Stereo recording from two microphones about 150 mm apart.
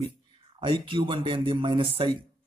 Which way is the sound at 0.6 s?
35° right (ahead or behind).